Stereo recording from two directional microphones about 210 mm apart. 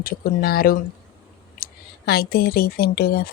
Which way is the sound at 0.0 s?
45° left (ahead or behind).